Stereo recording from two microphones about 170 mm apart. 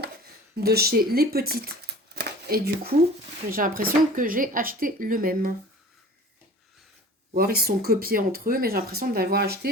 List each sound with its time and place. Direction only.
0.5 s speech: 65° right (ahead or behind)
2.1 s a sound: 60° right (ahead or behind)
3.5 s speech: 55° right (ahead or behind)
7.3 s speech: 65° right (ahead or behind)